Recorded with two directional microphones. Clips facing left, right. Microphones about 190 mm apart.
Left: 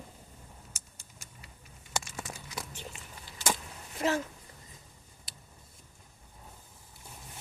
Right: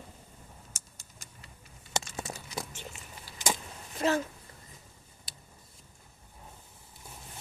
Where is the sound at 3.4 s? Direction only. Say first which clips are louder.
Even; 15° right (ahead or behind).